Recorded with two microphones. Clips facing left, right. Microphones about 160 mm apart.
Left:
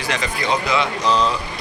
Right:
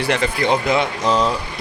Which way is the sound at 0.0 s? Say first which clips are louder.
Right 5 dB; 60° right (ahead or behind).